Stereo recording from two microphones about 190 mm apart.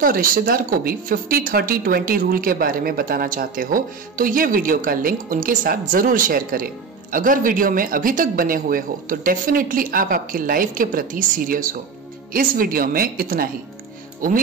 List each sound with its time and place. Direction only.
0.0 s speech: 50° right (ahead or behind)